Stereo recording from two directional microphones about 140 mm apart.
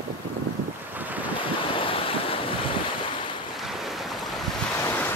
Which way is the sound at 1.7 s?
40° left (ahead or behind).